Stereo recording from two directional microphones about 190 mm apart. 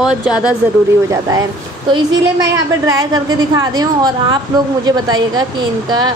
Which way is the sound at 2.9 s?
20° right (ahead or behind).